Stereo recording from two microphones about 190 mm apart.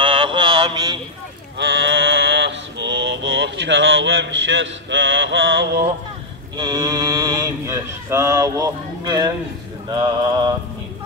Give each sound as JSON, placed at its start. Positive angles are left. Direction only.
{"t": 0.0, "sound": "mantra", "side_deg": -30}
{"t": 1.6, "sound": "mantra", "side_deg": -75}
{"t": 6.5, "sound": "speech", "side_deg": -20}